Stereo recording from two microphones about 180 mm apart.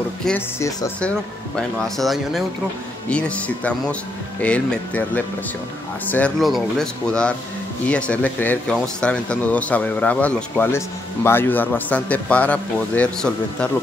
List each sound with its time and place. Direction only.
0.2 s speech: 5° left (ahead or behind)
0.6 s speech: 20° left (ahead or behind)
2.0 s speech: centre (ahead or behind)